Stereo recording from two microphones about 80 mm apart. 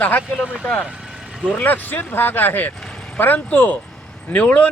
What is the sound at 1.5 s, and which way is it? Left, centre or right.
Speech, left.